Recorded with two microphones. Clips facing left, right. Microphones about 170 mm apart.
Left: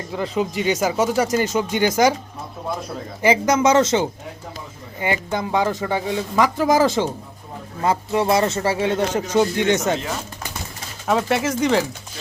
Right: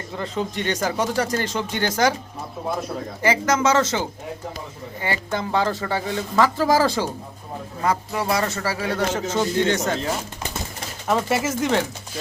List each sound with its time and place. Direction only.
0.2 s speech: 10° left (ahead or behind)
3.2 s speech: 15° left (ahead or behind)
11.1 s speech: centre (ahead or behind)